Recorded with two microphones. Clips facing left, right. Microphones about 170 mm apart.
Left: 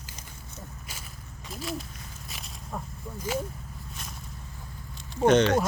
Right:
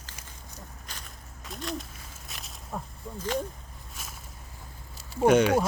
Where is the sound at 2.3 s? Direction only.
Centre (ahead or behind).